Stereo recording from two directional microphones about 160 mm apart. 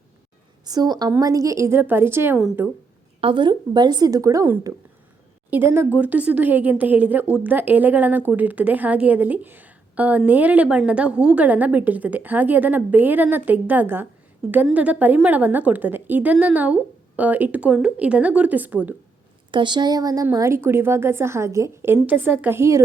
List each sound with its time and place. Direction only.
0.6 s a woman's voice: 25° right (ahead or behind)
3.2 s a woman's voice: 35° right (ahead or behind); by 18.9 s 10° right (ahead or behind)
19.5 s a woman's voice: 30° right (ahead or behind)